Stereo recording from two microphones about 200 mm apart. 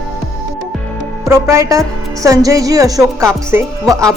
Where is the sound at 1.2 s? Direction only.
15° right (ahead or behind).